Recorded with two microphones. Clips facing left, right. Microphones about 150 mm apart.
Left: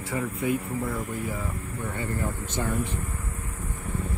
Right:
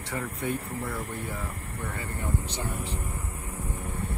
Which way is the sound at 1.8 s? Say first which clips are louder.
Left 5 dB; 30° left (ahead or behind).